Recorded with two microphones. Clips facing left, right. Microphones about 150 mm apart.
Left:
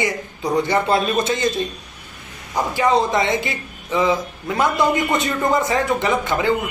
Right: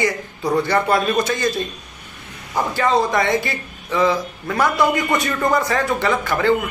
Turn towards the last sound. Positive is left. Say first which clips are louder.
# right 1 dB
turn(degrees=20)  # may be behind; listen again after turning